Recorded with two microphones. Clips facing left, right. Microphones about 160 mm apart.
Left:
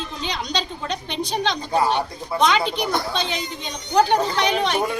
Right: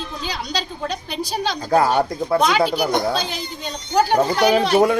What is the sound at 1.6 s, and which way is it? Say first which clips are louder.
Speech: right 6 dB; 90° right.